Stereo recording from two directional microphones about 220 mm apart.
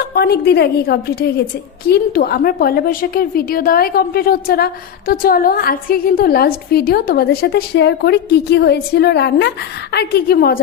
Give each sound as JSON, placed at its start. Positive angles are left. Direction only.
{"t": 0.0, "sound": "a woman's voice", "side_deg": 45}